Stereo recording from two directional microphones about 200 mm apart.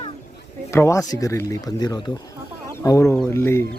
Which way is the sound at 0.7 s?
15° left (ahead or behind).